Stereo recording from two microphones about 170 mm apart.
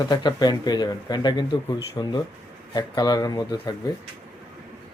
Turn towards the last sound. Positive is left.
turn(degrees=25)  # may be behind; listen again after turning